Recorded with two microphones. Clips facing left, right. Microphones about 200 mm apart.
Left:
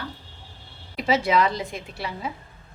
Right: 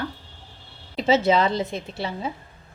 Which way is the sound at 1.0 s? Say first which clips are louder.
Right 2 dB; 25° right (ahead or behind).